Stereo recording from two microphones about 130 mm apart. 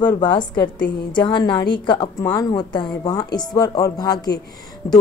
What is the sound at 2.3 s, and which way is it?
Speech, 25° left (ahead or behind).